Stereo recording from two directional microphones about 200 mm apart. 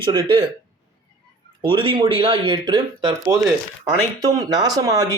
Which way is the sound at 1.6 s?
25° right (ahead or behind).